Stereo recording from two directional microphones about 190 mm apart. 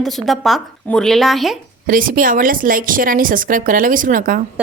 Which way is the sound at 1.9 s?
45° right (ahead or behind).